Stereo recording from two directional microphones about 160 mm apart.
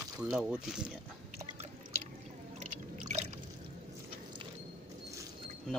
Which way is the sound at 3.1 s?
45° right (ahead or behind).